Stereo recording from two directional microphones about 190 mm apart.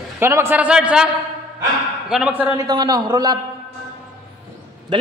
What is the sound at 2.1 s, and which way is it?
Speech, 5° right (ahead or behind).